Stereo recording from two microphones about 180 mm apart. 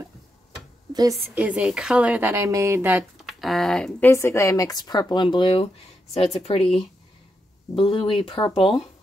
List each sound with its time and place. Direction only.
0.9 s a woman's voice: 15° right (ahead or behind)
3.2 s speech: centre (ahead or behind)
4.1 s a woman's voice: 15° left (ahead or behind); by 6.6 s 35° left (ahead or behind)
7.7 s speech: 30° left (ahead or behind)